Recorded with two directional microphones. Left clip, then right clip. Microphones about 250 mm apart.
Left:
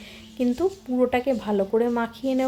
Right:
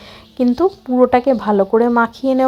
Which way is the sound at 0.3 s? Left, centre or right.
Centre.